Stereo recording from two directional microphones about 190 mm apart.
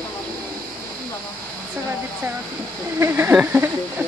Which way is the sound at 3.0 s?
10° right (ahead or behind).